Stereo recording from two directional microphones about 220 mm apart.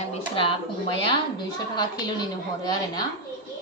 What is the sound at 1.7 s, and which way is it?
A woman's voice, 20° left (ahead or behind).